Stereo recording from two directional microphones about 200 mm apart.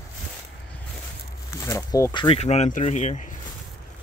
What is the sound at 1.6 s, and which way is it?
Speech, 15° left (ahead or behind).